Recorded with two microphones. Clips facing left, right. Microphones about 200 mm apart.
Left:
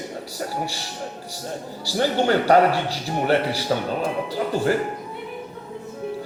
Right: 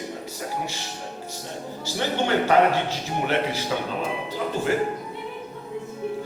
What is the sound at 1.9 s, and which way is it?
A man's voice, 40° left (ahead or behind).